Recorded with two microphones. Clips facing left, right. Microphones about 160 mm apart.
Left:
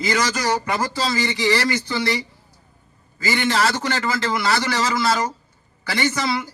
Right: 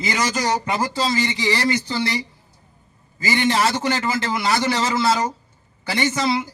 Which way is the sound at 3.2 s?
20° right (ahead or behind).